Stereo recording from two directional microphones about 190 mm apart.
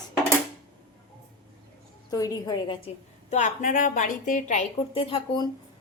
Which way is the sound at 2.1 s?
20° left (ahead or behind).